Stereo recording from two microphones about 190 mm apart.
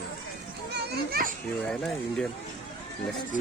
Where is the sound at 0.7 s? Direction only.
55° right (ahead or behind).